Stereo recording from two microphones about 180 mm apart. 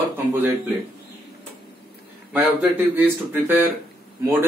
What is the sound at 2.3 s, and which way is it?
Speech, 5° right (ahead or behind).